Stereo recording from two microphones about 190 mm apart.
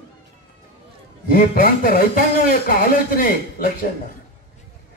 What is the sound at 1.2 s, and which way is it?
Speech, 50° left (ahead or behind).